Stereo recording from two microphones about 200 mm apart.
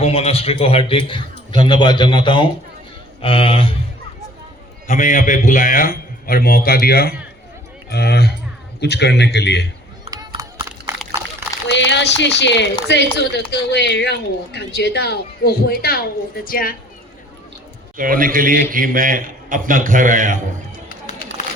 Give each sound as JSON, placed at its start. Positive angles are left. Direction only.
{"t": 0.0, "sound": "a man's voice", "side_deg": 30}
{"t": 4.9, "sound": "speech", "side_deg": 40}
{"t": 10.1, "sound": "a sound", "side_deg": -15}
{"t": 10.9, "sound": "pour", "side_deg": -10}
{"t": 11.7, "sound": "speech", "side_deg": 65}
{"t": 17.9, "sound": "a man's voice", "side_deg": -45}